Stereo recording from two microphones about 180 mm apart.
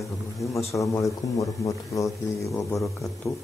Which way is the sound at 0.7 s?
15° left (ahead or behind).